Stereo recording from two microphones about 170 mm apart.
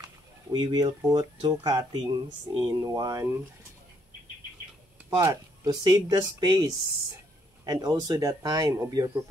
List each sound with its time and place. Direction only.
0.5 s speech: 25° right (ahead or behind)
5.2 s speech: 20° right (ahead or behind)